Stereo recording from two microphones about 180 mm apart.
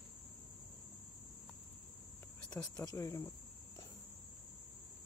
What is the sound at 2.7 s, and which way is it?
Speech, 20° left (ahead or behind).